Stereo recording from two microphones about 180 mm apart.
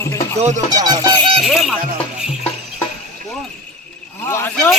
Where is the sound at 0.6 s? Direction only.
20° right (ahead or behind).